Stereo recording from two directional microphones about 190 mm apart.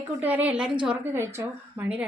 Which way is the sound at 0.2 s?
10° right (ahead or behind).